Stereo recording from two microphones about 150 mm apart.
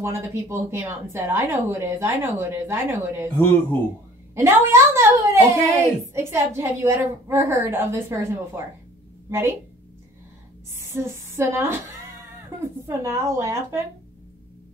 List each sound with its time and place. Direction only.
0.0 s a woman's voice: 20° right (ahead or behind)
4.4 s a woman's voice: 15° right (ahead or behind)
10.9 s a sound: 15° right (ahead or behind)
12.8 s a woman's voice: 20° right (ahead or behind)